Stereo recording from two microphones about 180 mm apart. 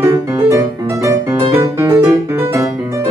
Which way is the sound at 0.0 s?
15° right (ahead or behind).